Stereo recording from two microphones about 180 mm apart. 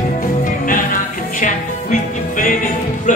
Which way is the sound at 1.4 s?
50° left (ahead or behind).